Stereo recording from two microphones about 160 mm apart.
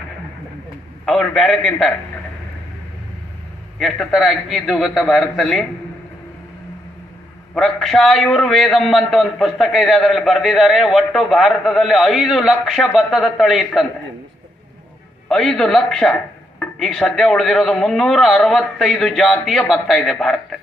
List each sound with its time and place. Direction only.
1.0 s a man's voice: centre (ahead or behind)
3.8 s a man's voice: centre (ahead or behind)
7.5 s a man's voice: centre (ahead or behind)
15.3 s a man's voice: centre (ahead or behind)